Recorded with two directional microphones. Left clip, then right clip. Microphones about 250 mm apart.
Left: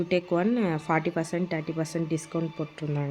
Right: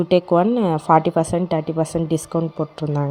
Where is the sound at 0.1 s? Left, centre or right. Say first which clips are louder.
Right 11 dB; right.